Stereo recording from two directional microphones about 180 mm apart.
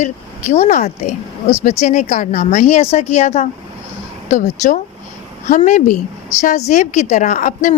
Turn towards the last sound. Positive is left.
turn(degrees=45)  # may be behind; listen again after turning